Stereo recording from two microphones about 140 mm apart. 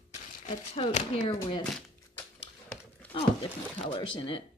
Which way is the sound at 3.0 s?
10° left (ahead or behind).